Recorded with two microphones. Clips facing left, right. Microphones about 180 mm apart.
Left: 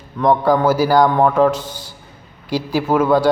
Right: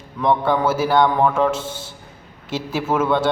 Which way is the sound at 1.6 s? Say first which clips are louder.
Right 1 dB; 25° right (ahead or behind).